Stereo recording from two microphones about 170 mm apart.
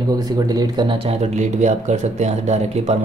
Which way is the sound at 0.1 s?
20° right (ahead or behind).